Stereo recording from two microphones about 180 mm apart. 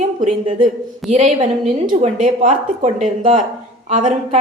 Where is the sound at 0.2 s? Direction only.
40° right (ahead or behind).